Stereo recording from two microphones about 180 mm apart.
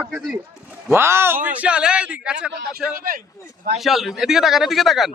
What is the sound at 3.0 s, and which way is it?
Speech, 50° right (ahead or behind).